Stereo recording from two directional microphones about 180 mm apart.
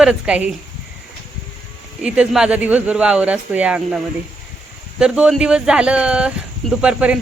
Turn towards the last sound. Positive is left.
turn(degrees=-5)  # may be behind; listen again after turning